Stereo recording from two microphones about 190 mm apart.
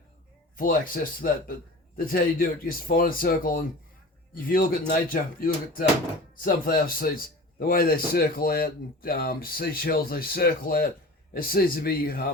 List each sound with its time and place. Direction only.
0.5 s speech: 45° left (ahead or behind)